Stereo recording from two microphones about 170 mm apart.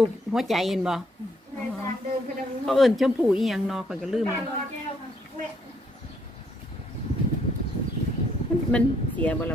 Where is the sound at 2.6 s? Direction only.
Centre (ahead or behind).